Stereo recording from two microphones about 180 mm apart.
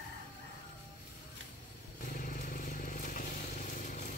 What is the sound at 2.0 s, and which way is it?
Vehicle, 50° left (ahead or behind).